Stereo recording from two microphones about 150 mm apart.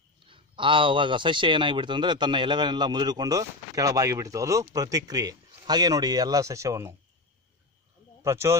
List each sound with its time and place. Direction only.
0.2 s speech: 35° right (ahead or behind)
8.2 s speech: 20° right (ahead or behind)